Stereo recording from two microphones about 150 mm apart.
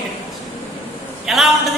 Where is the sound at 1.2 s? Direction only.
Centre (ahead or behind).